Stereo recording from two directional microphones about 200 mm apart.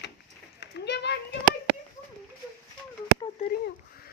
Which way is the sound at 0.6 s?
55° left (ahead or behind).